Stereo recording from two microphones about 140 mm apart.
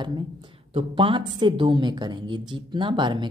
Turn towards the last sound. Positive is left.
turn(degrees=-35)  # may be behind; listen again after turning